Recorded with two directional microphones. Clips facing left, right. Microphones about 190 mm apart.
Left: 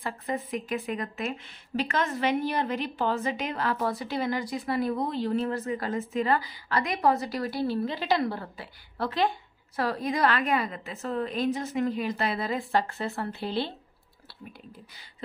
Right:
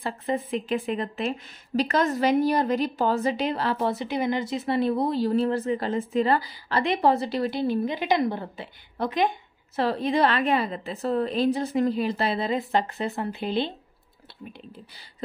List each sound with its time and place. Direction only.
0.0 s a woman's voice: 30° right (ahead or behind)